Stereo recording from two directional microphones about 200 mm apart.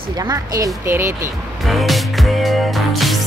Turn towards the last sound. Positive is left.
turn(degrees=0)  # may be behind; listen again after turning